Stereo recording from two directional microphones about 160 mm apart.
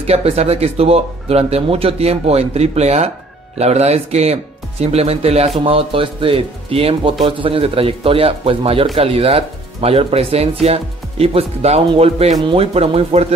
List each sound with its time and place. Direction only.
0.0 s speech: 40° right (ahead or behind)